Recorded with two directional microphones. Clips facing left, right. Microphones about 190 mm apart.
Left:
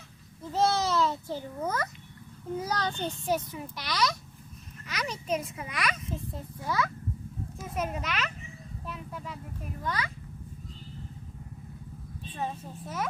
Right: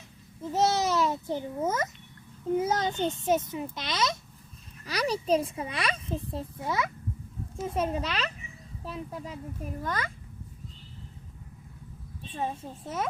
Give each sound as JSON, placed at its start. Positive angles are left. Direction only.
{"t": 0.5, "sound": "a child's voice", "side_deg": -20}
{"t": 4.9, "sound": "speech", "side_deg": -35}
{"t": 9.8, "sound": "a child's voice", "side_deg": -50}
{"t": 12.3, "sound": "speech", "side_deg": -25}